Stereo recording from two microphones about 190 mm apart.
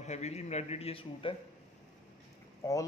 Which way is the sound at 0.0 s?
35° left (ahead or behind).